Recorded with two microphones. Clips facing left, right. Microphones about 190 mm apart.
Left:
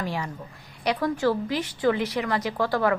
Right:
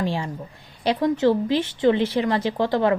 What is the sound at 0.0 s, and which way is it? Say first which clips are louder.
A woman's voice: right 5 dB; 25° right (ahead or behind).